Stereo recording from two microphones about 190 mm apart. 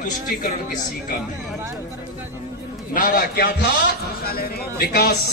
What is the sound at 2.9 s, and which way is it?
A man's voice, 50° left (ahead or behind).